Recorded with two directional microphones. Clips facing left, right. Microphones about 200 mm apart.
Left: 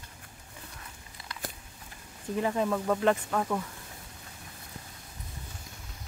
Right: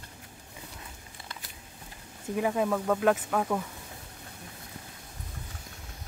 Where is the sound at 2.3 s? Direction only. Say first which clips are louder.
Right 1 dB; 10° right (ahead or behind).